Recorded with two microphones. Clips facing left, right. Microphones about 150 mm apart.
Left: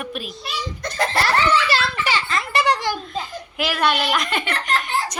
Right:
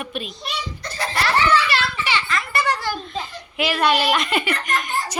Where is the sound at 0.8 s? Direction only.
50° left (ahead or behind).